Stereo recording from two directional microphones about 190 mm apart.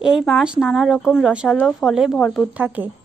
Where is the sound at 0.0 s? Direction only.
5° right (ahead or behind).